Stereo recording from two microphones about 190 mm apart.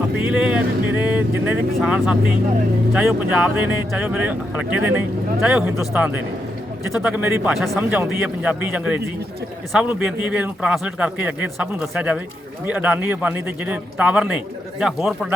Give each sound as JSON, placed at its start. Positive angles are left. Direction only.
{"t": 0.2, "sound": "speech", "side_deg": -5}